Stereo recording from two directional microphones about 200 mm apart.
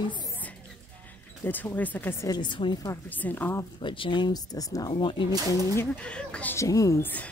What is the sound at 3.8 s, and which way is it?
Speech, 25° left (ahead or behind).